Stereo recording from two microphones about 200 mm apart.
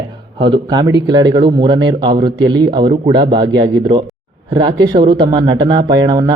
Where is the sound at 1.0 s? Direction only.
20° right (ahead or behind).